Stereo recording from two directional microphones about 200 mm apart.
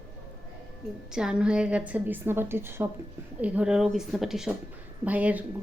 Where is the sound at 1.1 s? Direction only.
5° right (ahead or behind).